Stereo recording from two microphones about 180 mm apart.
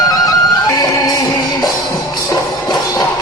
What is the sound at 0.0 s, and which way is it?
Music, 20° left (ahead or behind).